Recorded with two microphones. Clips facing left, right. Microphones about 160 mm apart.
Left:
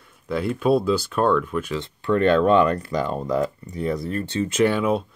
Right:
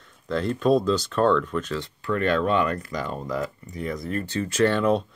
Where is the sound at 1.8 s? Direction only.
30° left (ahead or behind).